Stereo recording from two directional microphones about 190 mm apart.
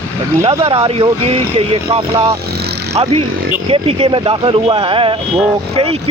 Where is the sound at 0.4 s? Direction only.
25° right (ahead or behind).